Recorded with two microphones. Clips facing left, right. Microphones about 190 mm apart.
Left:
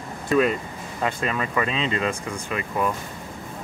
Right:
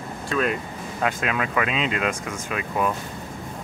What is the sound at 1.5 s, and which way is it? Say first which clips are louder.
Speech: even; 5° right (ahead or behind).